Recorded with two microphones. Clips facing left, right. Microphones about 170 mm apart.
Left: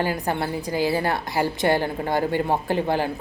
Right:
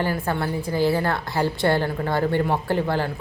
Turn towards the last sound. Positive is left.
turn(degrees=15)  # may be behind; listen again after turning